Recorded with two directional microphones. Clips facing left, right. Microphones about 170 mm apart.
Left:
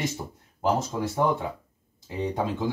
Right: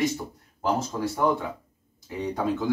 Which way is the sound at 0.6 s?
20° left (ahead or behind).